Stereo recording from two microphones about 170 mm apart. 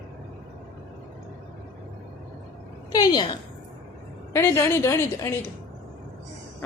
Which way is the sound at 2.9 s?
25° left (ahead or behind).